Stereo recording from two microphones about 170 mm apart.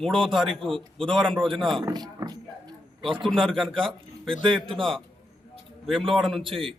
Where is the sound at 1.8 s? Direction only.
20° right (ahead or behind).